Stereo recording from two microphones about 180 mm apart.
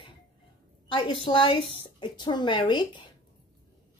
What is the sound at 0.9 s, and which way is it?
A woman's voice, 30° left (ahead or behind).